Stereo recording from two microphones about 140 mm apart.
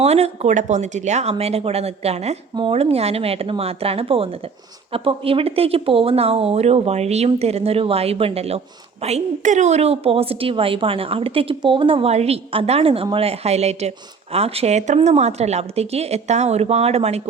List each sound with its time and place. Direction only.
0.0 s a woman's voice: 50° right (ahead or behind)